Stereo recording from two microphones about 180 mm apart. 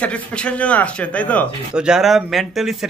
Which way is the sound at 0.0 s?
5° left (ahead or behind).